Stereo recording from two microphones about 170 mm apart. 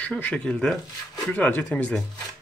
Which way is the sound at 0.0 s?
10° left (ahead or behind).